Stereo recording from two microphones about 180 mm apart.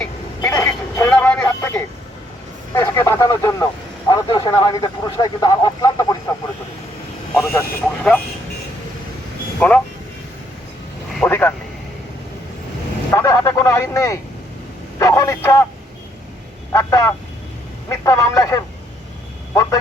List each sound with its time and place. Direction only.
0.4 s vehicle: 15° left (ahead or behind)
2.7 s a sound: 15° left (ahead or behind)
4.1 s speech: 20° left (ahead or behind)
7.3 s speech: 10° left (ahead or behind)
9.6 s speech: 10° left (ahead or behind)
11.3 s a sound: 10° left (ahead or behind)
13.1 s a sound: 15° left (ahead or behind)
14.9 s vehicle: 15° left (ahead or behind)
16.7 s speech: 15° left (ahead or behind)